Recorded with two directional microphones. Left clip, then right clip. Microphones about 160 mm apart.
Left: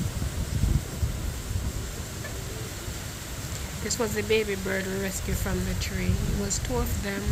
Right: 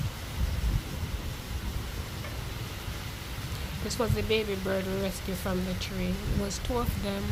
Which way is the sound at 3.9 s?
15° right (ahead or behind).